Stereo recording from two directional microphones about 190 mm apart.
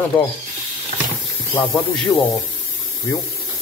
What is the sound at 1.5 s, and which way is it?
Speech, centre (ahead or behind).